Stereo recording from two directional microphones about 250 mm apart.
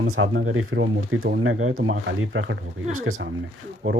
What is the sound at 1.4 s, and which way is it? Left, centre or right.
Speech, right.